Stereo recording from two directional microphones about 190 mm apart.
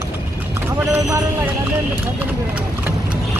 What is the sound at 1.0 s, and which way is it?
Speech, 15° right (ahead or behind).